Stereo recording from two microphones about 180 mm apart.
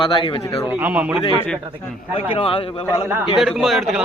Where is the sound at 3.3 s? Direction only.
Centre (ahead or behind).